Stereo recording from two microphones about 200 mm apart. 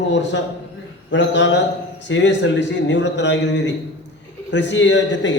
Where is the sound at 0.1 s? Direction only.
65° left (ahead or behind).